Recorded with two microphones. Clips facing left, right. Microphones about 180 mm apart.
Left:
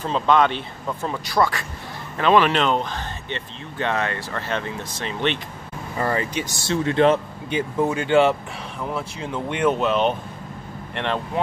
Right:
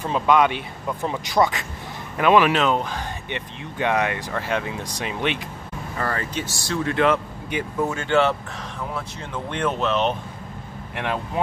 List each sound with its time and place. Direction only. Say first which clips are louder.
0.0 s speech: even; 10° right (ahead or behind)
5.9 s speech: left 4 dB; 15° left (ahead or behind)
7.9 s speech: left 3 dB; 15° left (ahead or behind)
9.5 s speech: left 3 dB; 10° left (ahead or behind)